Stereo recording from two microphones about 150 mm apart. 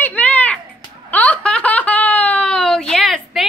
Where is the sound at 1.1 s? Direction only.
10° left (ahead or behind).